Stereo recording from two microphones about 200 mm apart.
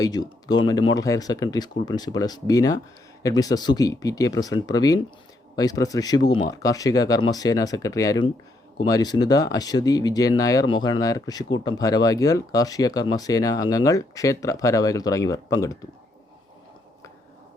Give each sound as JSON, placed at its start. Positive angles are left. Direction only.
{"t": 0.0, "sound": "speech", "side_deg": 20}